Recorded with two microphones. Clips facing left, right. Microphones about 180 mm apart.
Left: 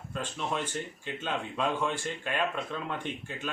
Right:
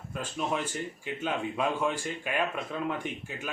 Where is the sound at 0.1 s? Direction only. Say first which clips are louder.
Right 2 dB; 10° right (ahead or behind).